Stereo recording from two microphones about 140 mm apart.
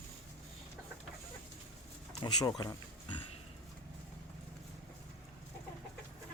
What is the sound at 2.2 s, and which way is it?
Speech, 30° left (ahead or behind).